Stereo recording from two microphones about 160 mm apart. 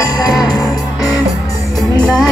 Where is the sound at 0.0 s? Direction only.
25° left (ahead or behind).